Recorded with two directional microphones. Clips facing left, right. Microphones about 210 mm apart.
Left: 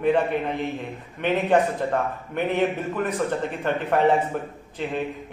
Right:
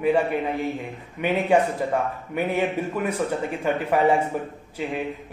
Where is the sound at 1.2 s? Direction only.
10° right (ahead or behind).